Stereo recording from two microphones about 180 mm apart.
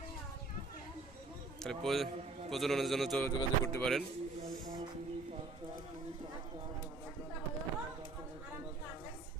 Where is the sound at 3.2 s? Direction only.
15° left (ahead or behind).